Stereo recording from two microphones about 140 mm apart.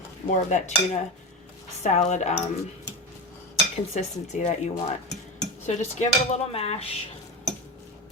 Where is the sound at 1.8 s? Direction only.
55° left (ahead or behind).